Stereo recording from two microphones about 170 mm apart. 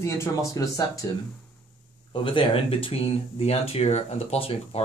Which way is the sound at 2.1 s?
30° left (ahead or behind).